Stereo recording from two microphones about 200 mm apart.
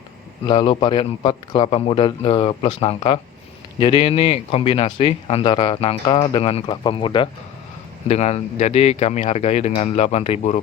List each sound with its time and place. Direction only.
0.4 s speech: 25° left (ahead or behind)